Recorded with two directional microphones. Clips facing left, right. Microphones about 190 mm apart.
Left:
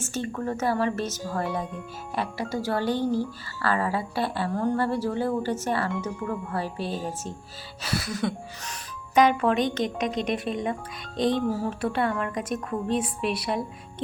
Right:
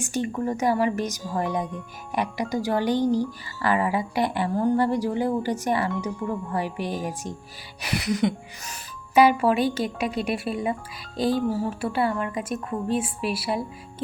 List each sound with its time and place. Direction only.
0.0 s a woman's voice: 15° right (ahead or behind)